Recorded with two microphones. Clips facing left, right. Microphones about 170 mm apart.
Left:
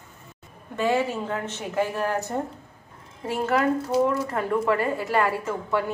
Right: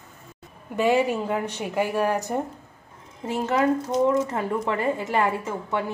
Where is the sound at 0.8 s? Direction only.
15° right (ahead or behind).